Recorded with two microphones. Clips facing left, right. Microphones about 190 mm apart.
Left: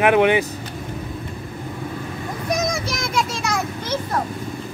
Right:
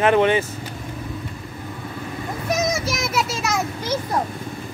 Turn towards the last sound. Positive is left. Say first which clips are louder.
# even
turn(degrees=-5)  # may be behind; listen again after turning